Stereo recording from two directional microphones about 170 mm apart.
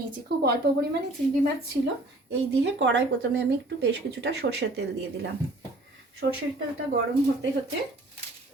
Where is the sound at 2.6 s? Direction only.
90° right.